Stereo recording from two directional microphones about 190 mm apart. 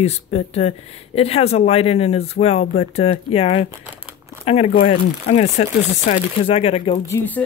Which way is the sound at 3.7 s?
10° right (ahead or behind).